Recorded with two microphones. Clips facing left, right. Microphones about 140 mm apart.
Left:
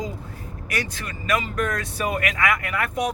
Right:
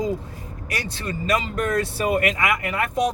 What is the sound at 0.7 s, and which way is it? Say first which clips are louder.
Speech: right 1 dB; 30° right (ahead or behind).